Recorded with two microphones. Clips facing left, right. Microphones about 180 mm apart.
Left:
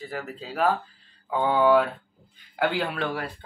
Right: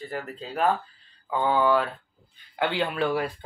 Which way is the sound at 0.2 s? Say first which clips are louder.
Left 1 dB; 5° left (ahead or behind).